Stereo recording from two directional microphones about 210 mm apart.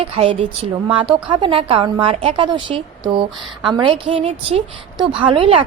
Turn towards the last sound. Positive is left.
turn(degrees=-25)  # may be behind; listen again after turning